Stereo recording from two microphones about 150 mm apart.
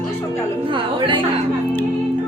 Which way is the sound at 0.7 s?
35° right (ahead or behind).